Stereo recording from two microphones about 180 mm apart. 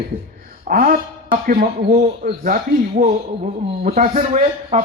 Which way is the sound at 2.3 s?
55° right (ahead or behind).